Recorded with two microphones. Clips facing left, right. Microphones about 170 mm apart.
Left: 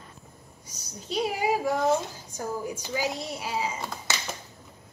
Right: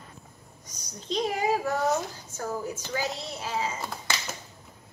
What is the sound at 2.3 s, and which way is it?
A woman's voice, 10° left (ahead or behind).